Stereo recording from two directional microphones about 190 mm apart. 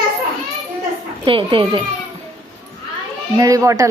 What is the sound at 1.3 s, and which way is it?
Speech, 25° right (ahead or behind).